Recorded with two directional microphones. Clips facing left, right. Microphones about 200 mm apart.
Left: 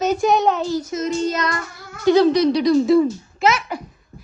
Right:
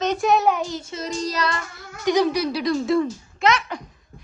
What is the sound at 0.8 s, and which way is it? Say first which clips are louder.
Child singing: left 7 dB; 30° right (ahead or behind).